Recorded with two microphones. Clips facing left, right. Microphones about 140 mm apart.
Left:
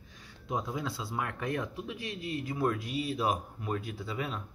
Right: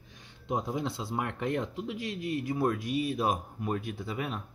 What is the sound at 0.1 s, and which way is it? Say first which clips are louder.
Speech: right 2 dB; 20° right (ahead or behind).